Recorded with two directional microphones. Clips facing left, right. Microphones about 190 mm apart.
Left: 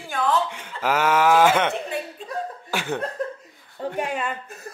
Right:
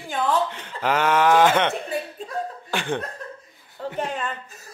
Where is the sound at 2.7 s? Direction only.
5° left (ahead or behind).